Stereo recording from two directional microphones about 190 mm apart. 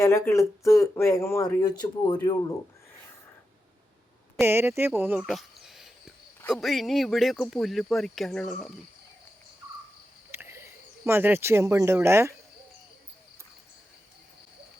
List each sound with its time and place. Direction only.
0.0 s speech: 15° left (ahead or behind)
4.4 s speech: 10° right (ahead or behind); by 8.5 s 5° left (ahead or behind)
10.3 s speech: 15° right (ahead or behind)